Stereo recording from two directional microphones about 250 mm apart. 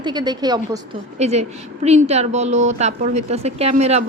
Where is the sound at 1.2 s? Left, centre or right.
Right.